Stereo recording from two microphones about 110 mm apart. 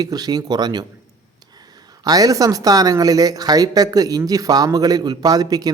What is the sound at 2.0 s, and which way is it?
Speech, 35° right (ahead or behind).